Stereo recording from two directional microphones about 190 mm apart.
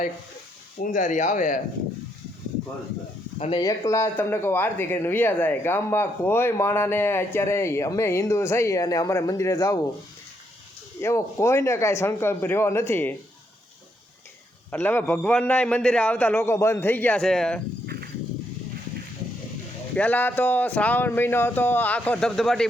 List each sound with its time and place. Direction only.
0.8 s speech: 40° left (ahead or behind)
3.3 s speech: 35° left (ahead or behind)
3.6 s speech: 15° left (ahead or behind)
11.0 s speech: 15° left (ahead or behind)
14.7 s speech: 10° left (ahead or behind)
20.0 s speech: 10° left (ahead or behind)